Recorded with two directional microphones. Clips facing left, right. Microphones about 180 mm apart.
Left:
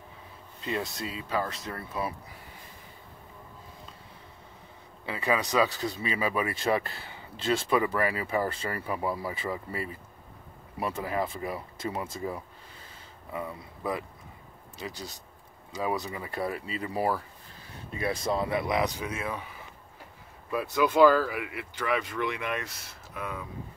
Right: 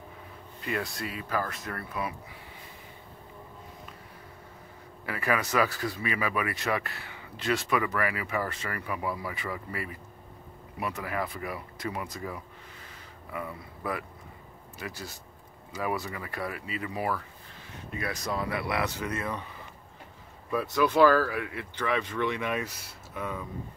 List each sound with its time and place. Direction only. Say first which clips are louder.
0.6 s speech: even; 25° left (ahead or behind)
5.0 s speech: left 1 dB; 20° left (ahead or behind)
20.5 s speech: even; 10° left (ahead or behind)